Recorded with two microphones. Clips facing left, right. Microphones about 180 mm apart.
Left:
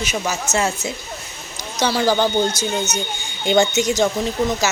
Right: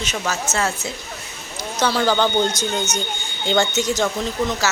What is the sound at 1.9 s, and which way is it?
A woman's voice, 10° left (ahead or behind).